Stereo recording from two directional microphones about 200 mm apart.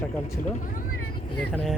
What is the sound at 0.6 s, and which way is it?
Speech, 40° left (ahead or behind).